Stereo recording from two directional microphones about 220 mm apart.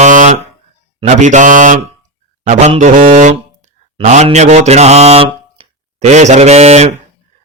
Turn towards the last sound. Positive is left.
turn(degrees=-30)  # may be behind; listen again after turning